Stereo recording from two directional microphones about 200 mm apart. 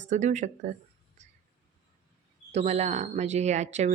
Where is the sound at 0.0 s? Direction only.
35° right (ahead or behind).